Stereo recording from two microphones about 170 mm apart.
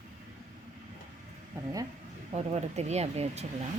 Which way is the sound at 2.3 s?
40° right (ahead or behind).